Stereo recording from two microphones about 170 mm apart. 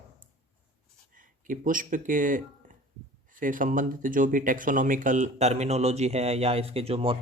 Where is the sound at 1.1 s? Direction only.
50° right (ahead or behind).